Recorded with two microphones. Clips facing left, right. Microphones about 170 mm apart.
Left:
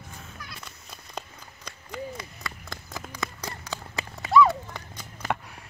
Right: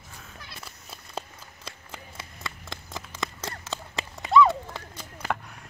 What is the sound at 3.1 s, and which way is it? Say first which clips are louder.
Horse: right 1 dB; centre (ahead or behind).